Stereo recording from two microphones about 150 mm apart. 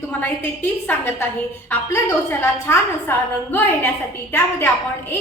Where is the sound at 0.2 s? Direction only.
15° left (ahead or behind).